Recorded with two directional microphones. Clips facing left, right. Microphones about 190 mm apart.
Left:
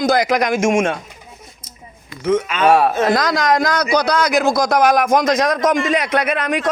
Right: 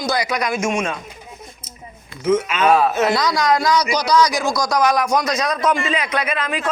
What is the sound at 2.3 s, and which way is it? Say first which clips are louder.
Speech: left 1 dB; 30° left (ahead or behind).